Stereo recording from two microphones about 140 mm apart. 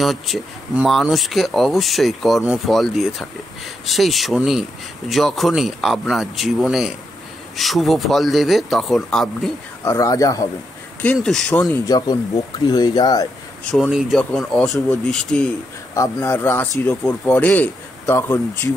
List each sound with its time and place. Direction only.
0.0 s speech: centre (ahead or behind)
9.8 s speech: 25° left (ahead or behind)
11.1 s speech: 5° left (ahead or behind)
12.6 s speech: 30° left (ahead or behind)
13.7 s speech: centre (ahead or behind)
15.9 s speech: 20° left (ahead or behind)